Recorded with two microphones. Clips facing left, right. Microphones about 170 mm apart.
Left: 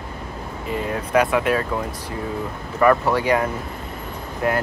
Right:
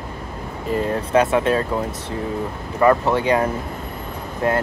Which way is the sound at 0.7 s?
35° right (ahead or behind).